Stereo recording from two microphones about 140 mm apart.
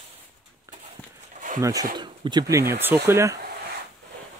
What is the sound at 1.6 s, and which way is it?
Speech, 25° right (ahead or behind).